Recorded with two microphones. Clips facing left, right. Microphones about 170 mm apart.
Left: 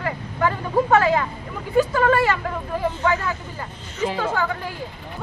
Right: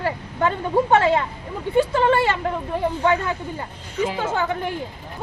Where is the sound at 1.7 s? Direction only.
25° right (ahead or behind).